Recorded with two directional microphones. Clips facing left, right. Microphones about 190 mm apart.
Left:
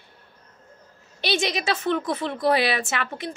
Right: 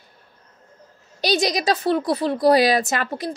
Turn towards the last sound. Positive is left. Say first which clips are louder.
# right 4 dB
turn(degrees=-35)  # may be behind; listen again after turning